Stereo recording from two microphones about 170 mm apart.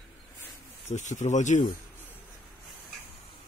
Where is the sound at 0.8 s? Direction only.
45° left (ahead or behind).